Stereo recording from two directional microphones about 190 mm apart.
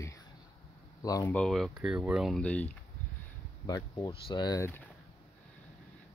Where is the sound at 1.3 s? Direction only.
5° left (ahead or behind).